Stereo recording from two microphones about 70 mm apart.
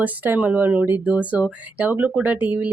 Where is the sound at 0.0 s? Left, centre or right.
Right.